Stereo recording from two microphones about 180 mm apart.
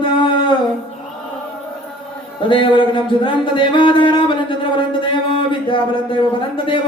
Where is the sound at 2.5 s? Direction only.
30° left (ahead or behind).